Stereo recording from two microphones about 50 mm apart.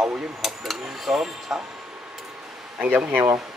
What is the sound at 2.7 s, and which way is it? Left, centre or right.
Speech, right.